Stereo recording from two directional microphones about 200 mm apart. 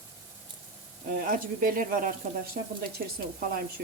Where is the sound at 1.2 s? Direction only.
45° right (ahead or behind).